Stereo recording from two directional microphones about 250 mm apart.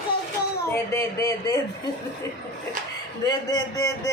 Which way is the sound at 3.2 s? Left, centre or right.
Centre.